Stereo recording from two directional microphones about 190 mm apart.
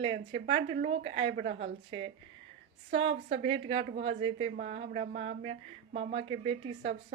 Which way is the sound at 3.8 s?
30° right (ahead or behind).